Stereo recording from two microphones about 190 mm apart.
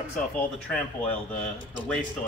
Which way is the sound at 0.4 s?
10° left (ahead or behind).